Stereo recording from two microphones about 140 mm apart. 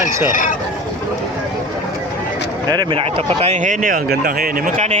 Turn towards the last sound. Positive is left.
turn(degrees=-85)